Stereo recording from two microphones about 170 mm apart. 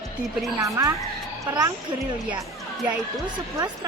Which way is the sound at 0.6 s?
20° right (ahead or behind).